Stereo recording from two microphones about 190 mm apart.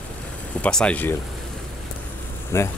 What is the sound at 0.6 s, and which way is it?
Speech, 5° left (ahead or behind).